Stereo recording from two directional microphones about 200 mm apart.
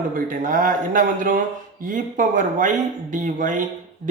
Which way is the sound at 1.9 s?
40° right (ahead or behind).